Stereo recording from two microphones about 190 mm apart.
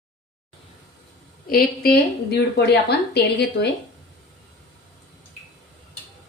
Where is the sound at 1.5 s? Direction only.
50° left (ahead or behind).